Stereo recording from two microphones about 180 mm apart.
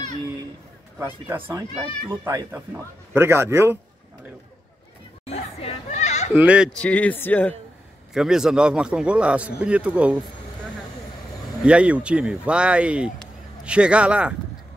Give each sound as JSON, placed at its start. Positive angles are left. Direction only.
{"t": 0.9, "sound": "speech", "side_deg": -10}
{"t": 5.2, "sound": "chatter", "side_deg": 35}
{"t": 6.3, "sound": "a man's voice", "side_deg": -5}
{"t": 6.8, "sound": "speech", "side_deg": 5}
{"t": 8.1, "sound": "a man's voice", "side_deg": -5}
{"t": 11.6, "sound": "speech", "side_deg": -5}
{"t": 13.2, "sound": "a sound", "side_deg": -5}